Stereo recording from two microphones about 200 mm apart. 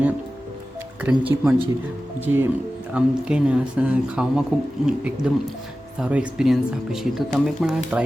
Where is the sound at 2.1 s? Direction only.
10° right (ahead or behind).